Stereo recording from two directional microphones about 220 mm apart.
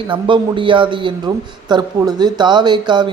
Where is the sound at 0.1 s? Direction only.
20° right (ahead or behind).